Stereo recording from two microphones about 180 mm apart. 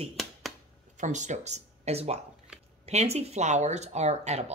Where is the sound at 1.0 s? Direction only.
40° right (ahead or behind).